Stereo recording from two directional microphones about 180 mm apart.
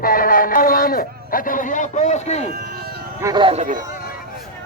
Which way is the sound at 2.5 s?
55° right (ahead or behind).